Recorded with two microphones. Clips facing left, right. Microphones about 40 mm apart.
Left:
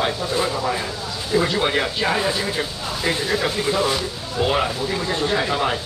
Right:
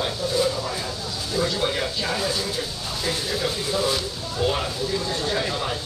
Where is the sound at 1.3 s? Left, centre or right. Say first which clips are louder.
Left 5 dB; left.